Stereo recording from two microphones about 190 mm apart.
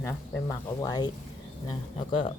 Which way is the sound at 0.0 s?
15° left (ahead or behind).